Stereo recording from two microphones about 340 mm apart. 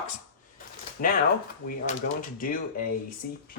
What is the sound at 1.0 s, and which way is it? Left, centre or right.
Speech, left.